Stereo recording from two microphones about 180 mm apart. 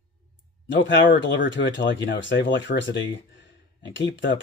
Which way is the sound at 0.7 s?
85° left.